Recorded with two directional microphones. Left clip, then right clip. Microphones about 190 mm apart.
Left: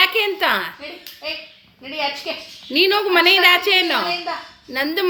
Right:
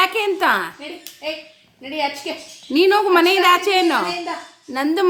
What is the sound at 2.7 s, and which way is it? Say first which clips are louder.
A woman's voice: right 1 dB; 45° right (ahead or behind).